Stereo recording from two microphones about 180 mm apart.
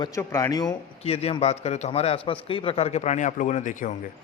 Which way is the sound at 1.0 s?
35° left (ahead or behind).